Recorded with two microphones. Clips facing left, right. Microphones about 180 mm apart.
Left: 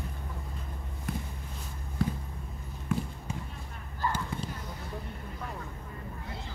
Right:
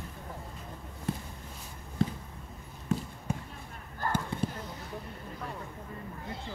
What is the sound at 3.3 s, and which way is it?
Basketball bounce, 55° right (ahead or behind).